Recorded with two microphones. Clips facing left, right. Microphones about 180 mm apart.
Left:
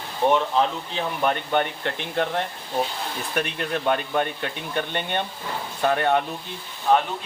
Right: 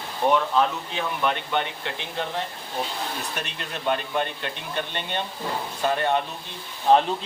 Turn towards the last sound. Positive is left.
turn(degrees=-25)  # may be behind; listen again after turning